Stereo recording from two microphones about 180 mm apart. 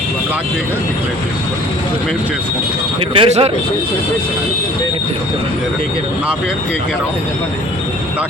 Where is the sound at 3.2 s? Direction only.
35° right (ahead or behind).